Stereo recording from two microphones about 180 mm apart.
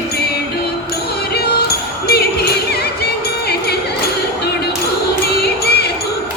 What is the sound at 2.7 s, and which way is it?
Music, 60° left (ahead or behind).